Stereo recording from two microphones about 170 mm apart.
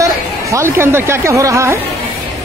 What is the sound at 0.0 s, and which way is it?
Speech, 15° right (ahead or behind).